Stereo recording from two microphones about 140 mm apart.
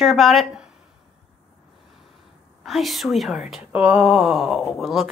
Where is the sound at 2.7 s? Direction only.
Centre (ahead or behind).